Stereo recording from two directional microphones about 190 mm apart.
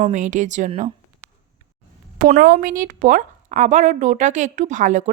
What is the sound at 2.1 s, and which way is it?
Speech, 45° right (ahead or behind).